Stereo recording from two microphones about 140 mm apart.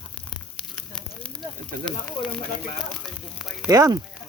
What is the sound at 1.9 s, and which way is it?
Speech, 5° left (ahead or behind).